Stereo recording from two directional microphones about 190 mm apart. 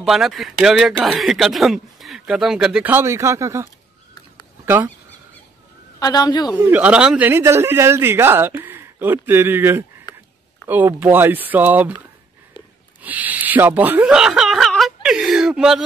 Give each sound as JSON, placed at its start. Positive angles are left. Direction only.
{"t": 0.0, "sound": "speech", "side_deg": 0}
{"t": 4.6, "sound": "a man's voice", "side_deg": -10}
{"t": 5.9, "sound": "a man's voice", "side_deg": 20}
{"t": 6.5, "sound": "a man's voice", "side_deg": -10}
{"t": 13.0, "sound": "speech", "side_deg": -10}